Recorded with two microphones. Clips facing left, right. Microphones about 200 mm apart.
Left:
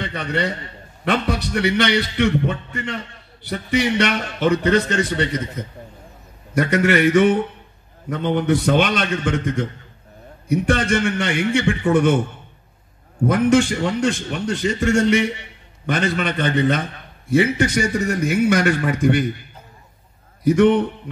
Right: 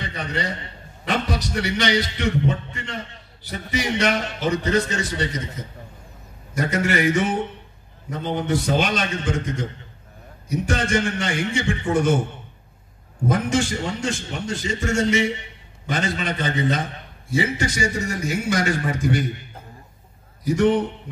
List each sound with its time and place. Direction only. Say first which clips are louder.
0.0 s a man's voice: left 5 dB; 60° left (ahead or behind)
6.5 s a man's voice: left 5 dB; 60° left (ahead or behind)
13.3 s a man's voice: left 6 dB; 60° left (ahead or behind)
15.9 s a man's voice: left 4 dB; 60° left (ahead or behind)
20.4 s a man's voice: left 5 dB; 60° left (ahead or behind)